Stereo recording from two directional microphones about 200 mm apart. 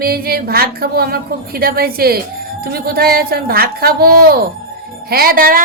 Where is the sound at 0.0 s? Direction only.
50° right (ahead or behind).